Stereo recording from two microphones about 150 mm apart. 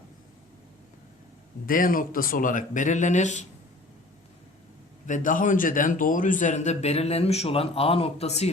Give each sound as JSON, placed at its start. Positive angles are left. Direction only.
{"t": 1.6, "sound": "speech", "side_deg": 70}
{"t": 5.0, "sound": "a man's voice", "side_deg": 60}